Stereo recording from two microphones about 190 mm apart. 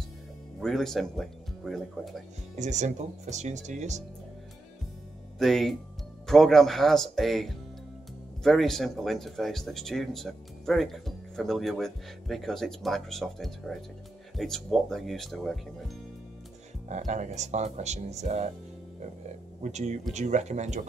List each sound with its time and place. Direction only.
0.6 s speech: centre (ahead or behind)
2.5 s speech: 40° right (ahead or behind)
5.4 s speech: centre (ahead or behind)
16.9 s speech: 40° right (ahead or behind)
19.6 s speech: 40° right (ahead or behind)